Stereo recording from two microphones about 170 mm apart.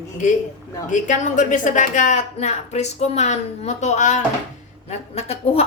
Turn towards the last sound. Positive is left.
turn(degrees=35)  # may be behind; listen again after turning